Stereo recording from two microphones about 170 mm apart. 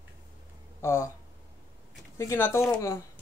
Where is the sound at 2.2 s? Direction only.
15° left (ahead or behind).